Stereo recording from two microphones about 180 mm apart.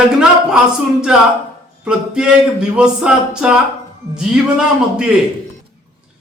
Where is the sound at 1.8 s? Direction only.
5° right (ahead or behind).